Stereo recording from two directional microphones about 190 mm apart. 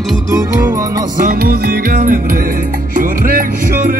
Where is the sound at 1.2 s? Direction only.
45° right (ahead or behind).